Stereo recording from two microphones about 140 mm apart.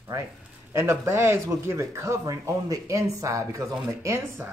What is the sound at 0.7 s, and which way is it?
Speech, 20° right (ahead or behind).